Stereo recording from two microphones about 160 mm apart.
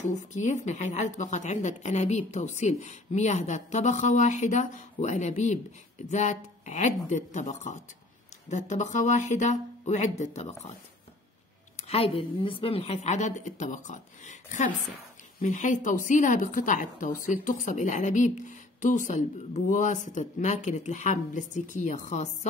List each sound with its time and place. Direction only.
0.3 s a woman's voice: 50° left (ahead or behind)
11.9 s a woman's voice: 35° left (ahead or behind)